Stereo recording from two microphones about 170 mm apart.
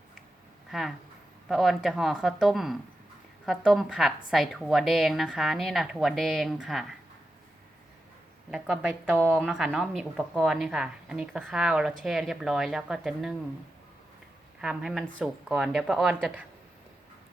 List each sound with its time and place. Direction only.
0.7 s speech: centre (ahead or behind)
8.4 s speech: centre (ahead or behind)
14.6 s speech: 5° right (ahead or behind)